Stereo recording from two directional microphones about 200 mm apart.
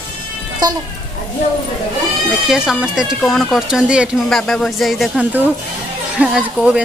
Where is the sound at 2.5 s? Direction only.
5° right (ahead or behind).